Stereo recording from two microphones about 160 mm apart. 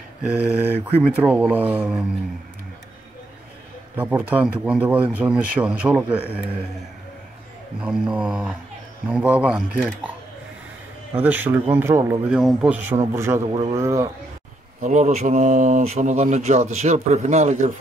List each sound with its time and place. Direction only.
0.2 s speech: 10° right (ahead or behind)
3.9 s speech: 10° right (ahead or behind)
7.8 s speech: 5° right (ahead or behind)
11.1 s speech: 10° right (ahead or behind)
12.3 s speech: 5° right (ahead or behind)
12.9 s speech: 15° right (ahead or behind)
13.5 s speech: 30° right (ahead or behind)
13.7 s speech: 20° right (ahead or behind)
14.8 s speech: 50° right (ahead or behind)